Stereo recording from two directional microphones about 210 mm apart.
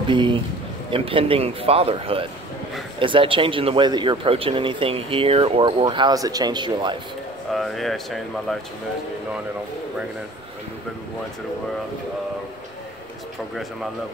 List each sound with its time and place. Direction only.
0.1 s speech: 25° right (ahead or behind)
7.5 s speech: centre (ahead or behind)